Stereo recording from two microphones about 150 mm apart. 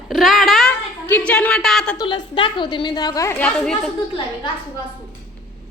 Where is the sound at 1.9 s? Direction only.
30° left (ahead or behind).